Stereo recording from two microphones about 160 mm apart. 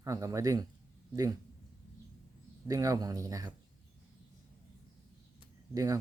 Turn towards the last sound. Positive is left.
turn(degrees=-20)  # may be behind; listen again after turning